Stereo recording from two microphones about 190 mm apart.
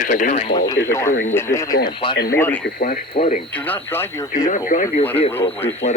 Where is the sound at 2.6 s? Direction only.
50° left (ahead or behind).